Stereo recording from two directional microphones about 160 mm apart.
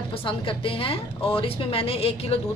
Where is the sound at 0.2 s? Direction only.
35° left (ahead or behind).